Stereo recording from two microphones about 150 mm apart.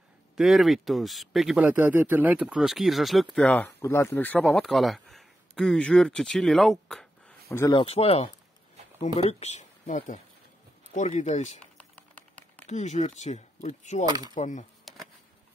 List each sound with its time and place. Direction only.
0.4 s speech: centre (ahead or behind)
7.4 s speech: 20° left (ahead or behind)
7.7 s speech: 40° left (ahead or behind)
11.6 s typing: 10° left (ahead or behind)
12.6 s speech: 50° left (ahead or behind)
14.0 s speech: 25° right (ahead or behind)
14.3 s speech: 55° left (ahead or behind)